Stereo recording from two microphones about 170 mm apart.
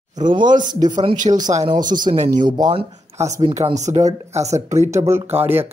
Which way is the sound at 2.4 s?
25° right (ahead or behind).